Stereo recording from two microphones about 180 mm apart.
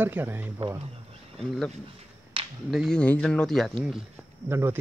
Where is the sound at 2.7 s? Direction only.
5° left (ahead or behind).